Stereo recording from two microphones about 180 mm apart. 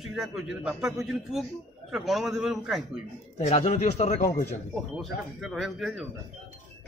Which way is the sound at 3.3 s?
40° left (ahead or behind).